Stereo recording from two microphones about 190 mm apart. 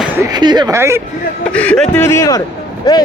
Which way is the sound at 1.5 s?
5° left (ahead or behind).